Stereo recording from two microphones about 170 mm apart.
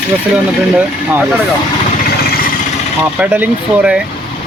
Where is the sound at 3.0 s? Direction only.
10° right (ahead or behind).